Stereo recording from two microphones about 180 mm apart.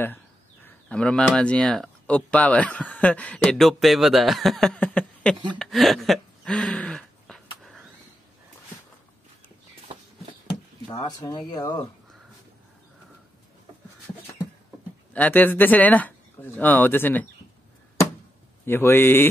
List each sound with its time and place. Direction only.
0.7 s speech: 5° left (ahead or behind)
5.6 s a sound: centre (ahead or behind)
10.4 s speech: 25° left (ahead or behind)
15.1 s speech: 10° left (ahead or behind)
18.7 s speech: 10° left (ahead or behind)